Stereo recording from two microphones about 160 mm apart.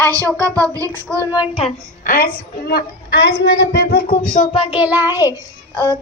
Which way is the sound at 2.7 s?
85° left.